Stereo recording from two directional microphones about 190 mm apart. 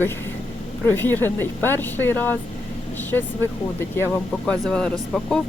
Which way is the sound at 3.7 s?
10° left (ahead or behind).